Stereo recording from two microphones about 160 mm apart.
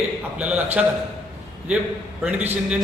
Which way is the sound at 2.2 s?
10° right (ahead or behind).